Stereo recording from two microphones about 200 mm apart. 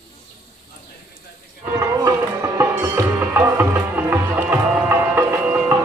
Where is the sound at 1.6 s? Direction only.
15° right (ahead or behind).